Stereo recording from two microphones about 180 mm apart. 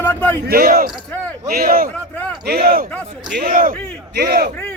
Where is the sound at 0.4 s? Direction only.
60° right (ahead or behind).